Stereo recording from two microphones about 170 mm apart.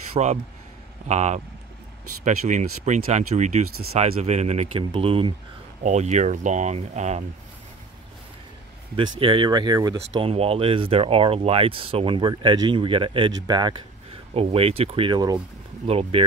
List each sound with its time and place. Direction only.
0.1 s speech: 40° right (ahead or behind)
5.8 s speech: 45° right (ahead or behind)
9.2 s speech: 30° right (ahead or behind)
10.1 s speech: 35° right (ahead or behind)
14.3 s speech: 35° right (ahead or behind)
15.9 s speech: 35° right (ahead or behind)